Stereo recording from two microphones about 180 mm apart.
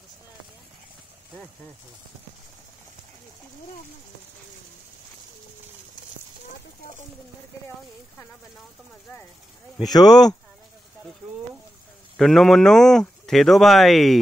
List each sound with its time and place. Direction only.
9.8 s speech: 20° left (ahead or behind)
12.2 s speech: centre (ahead or behind)